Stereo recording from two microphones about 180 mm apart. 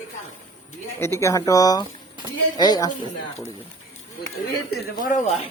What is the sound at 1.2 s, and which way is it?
Speech, 20° left (ahead or behind).